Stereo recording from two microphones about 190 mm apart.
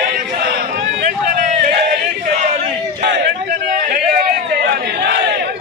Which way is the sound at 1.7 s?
50° right (ahead or behind).